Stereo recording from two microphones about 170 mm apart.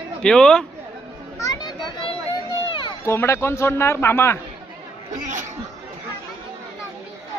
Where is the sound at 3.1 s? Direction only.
15° left (ahead or behind).